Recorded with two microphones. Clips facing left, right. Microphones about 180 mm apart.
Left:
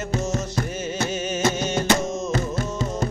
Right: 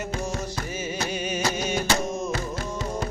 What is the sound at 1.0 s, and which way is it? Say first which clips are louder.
Music: left 5 dB; 25° left (ahead or behind).